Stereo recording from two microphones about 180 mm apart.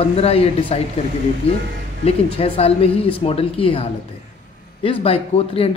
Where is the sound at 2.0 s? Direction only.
35° left (ahead or behind).